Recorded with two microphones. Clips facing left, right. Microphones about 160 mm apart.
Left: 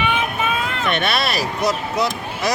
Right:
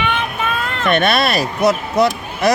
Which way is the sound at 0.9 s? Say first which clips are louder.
Right 7 dB; 50° right (ahead or behind).